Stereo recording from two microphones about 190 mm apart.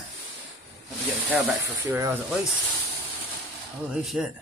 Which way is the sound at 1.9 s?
15° right (ahead or behind).